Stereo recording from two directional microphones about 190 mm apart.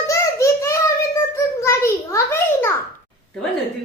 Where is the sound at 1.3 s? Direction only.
15° left (ahead or behind).